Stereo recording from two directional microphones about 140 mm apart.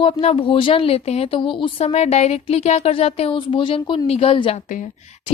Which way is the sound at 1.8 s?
50° left (ahead or behind).